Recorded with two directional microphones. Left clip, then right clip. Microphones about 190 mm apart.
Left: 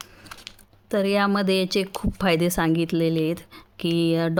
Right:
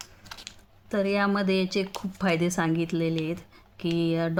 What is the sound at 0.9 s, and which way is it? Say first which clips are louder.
Speech: left 4 dB; 45° left (ahead or behind).